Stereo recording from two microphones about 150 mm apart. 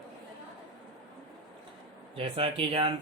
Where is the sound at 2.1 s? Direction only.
35° right (ahead or behind).